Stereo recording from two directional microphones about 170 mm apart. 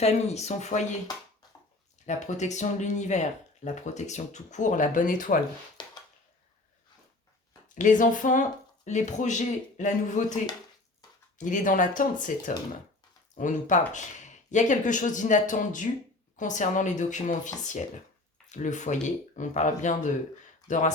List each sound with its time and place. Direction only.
0.0 s speech: 40° left (ahead or behind)
2.0 s speech: 45° left (ahead or behind)
5.8 s a sound: 25° left (ahead or behind)
7.8 s speech: 50° left (ahead or behind)